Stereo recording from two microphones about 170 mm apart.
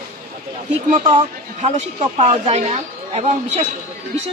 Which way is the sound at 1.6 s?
40° right (ahead or behind).